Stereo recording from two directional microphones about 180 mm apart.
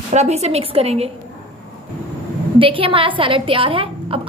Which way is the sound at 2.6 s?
30° right (ahead or behind).